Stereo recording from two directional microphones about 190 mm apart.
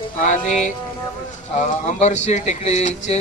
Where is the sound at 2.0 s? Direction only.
35° left (ahead or behind).